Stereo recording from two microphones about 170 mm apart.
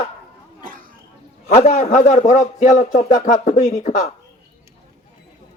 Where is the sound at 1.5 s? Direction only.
45° left (ahead or behind).